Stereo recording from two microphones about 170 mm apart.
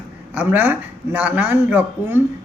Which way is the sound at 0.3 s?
10° right (ahead or behind).